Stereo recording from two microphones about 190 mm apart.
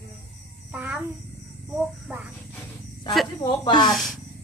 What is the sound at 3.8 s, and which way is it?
Speech, centre (ahead or behind).